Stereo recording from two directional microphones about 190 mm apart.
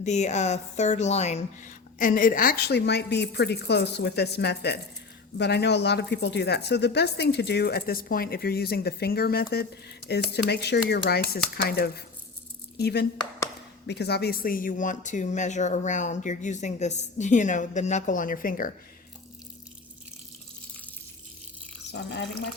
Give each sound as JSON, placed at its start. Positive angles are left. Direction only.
{"t": 0.0, "sound": "speech", "side_deg": 35}
{"t": 21.9, "sound": "speech", "side_deg": 65}